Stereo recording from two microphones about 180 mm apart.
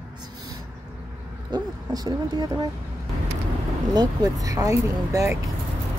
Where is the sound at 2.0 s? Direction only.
20° right (ahead or behind).